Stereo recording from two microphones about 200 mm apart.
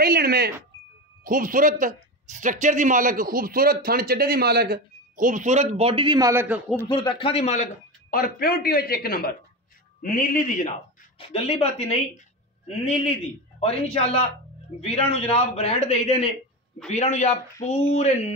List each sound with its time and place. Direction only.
0.0 s a sound: 50° right (ahead or behind)
1.2 s a man's voice: 45° right (ahead or behind); by 6.6 s 10° right (ahead or behind)
6.9 s a man's voice: 25° left (ahead or behind); by 10.7 s 40° left (ahead or behind)
11.1 s a man's voice: 30° left (ahead or behind)